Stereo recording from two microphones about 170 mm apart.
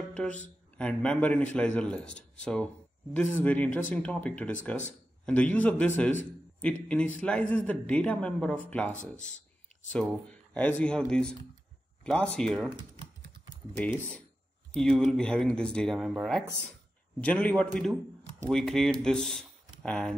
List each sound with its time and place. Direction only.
0.1 s speech: 5° left (ahead or behind)
10.5 s speech: 10° left (ahead or behind)
13.0 s typing: 35° right (ahead or behind)
13.7 s speech: 10° left (ahead or behind)